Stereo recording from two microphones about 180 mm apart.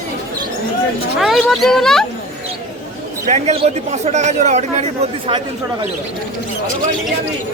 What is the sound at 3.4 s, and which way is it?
A man's voice, 35° right (ahead or behind).